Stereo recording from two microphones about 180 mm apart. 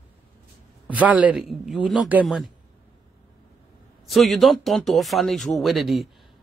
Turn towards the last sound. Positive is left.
turn(degrees=0)  # may be behind; listen again after turning